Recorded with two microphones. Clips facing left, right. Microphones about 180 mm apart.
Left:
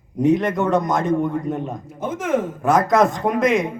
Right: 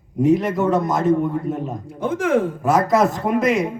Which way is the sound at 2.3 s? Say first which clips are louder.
Right 2 dB; 30° right (ahead or behind).